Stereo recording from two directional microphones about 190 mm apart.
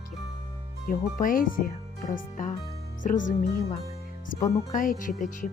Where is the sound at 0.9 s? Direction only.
45° left (ahead or behind).